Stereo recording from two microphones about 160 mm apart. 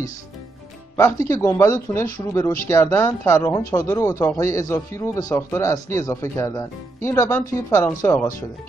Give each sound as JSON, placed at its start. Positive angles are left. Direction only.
{"t": 0.9, "sound": "speech", "side_deg": 15}